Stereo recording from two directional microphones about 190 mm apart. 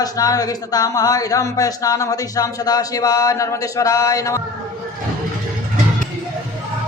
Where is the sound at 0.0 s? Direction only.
20° left (ahead or behind).